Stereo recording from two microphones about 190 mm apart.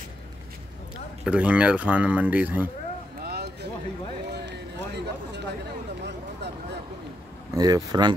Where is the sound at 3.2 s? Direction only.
55° right (ahead or behind).